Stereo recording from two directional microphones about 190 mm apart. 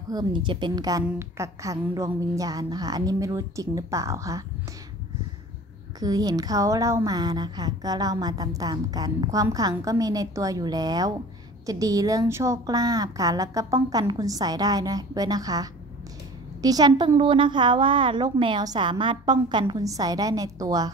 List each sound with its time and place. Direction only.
0.1 s a woman's voice: 25° right (ahead or behind)
5.9 s a woman's voice: 20° right (ahead or behind)